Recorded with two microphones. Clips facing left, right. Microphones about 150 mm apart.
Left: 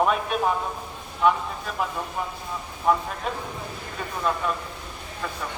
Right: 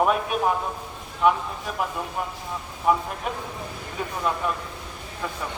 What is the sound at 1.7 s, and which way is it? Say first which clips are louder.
Speech: right 1 dB; 10° right (ahead or behind).